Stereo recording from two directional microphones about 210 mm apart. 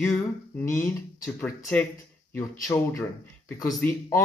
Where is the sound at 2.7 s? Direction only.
15° left (ahead or behind).